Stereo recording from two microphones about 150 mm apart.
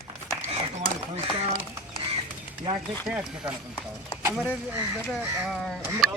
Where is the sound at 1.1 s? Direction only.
45° right (ahead or behind).